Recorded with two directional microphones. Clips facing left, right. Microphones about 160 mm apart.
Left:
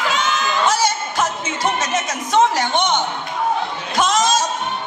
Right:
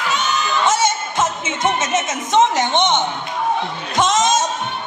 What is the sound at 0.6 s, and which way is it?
Music, 25° right (ahead or behind).